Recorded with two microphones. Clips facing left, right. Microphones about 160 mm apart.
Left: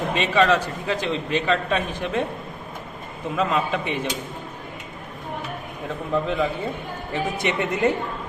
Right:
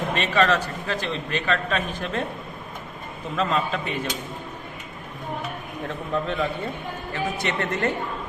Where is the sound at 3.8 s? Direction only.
20° left (ahead or behind).